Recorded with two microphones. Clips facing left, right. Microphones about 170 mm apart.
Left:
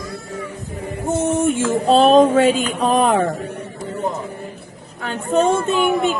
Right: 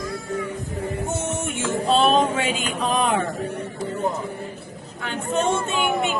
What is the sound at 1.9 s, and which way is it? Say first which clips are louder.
A man's voice: left 7 dB; 40° left (ahead or behind).